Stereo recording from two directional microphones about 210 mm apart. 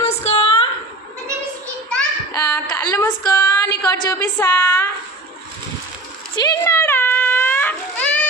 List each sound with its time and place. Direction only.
0.2 s a sound: 30° left (ahead or behind)
1.9 s child singing: 10° left (ahead or behind)
6.3 s baby cry: 15° left (ahead or behind)